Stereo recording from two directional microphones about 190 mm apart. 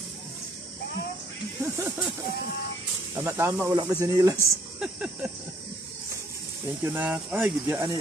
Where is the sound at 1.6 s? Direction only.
10° right (ahead or behind).